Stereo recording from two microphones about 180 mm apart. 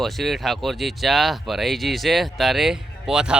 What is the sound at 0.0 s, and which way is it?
Speech, centre (ahead or behind).